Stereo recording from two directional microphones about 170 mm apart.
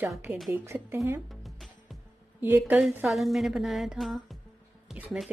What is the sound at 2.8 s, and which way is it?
A woman's voice, centre (ahead or behind).